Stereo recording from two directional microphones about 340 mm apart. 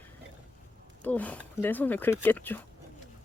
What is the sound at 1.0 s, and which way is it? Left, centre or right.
Speech, centre.